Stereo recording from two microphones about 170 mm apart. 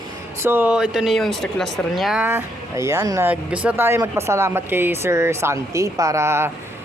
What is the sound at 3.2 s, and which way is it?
Speech, 5° right (ahead or behind).